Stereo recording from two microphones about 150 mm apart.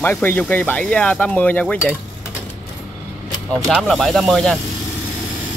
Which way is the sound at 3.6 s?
Centre (ahead or behind).